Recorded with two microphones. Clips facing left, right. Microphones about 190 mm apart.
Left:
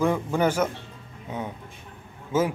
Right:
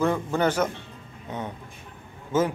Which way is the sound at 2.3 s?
10° left (ahead or behind).